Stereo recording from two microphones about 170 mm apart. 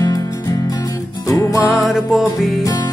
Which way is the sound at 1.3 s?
20° left (ahead or behind).